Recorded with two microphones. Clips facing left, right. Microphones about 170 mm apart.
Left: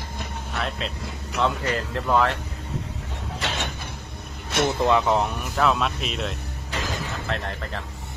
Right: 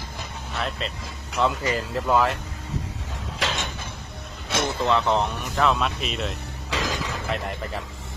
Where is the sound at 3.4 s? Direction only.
70° left (ahead or behind).